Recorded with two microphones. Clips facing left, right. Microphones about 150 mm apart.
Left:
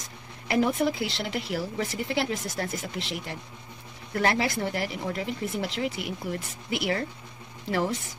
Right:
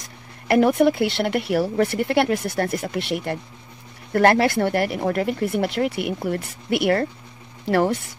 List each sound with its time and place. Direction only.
0.5 s speech: 65° right (ahead or behind)